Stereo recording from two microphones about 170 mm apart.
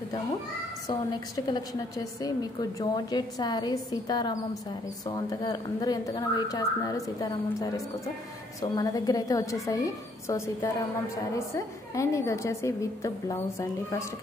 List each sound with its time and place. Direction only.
0.8 s a woman's voice: 25° left (ahead or behind)